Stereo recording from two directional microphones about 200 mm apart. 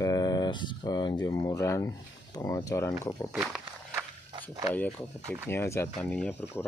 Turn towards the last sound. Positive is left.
turn(degrees=10)  # may be behind; listen again after turning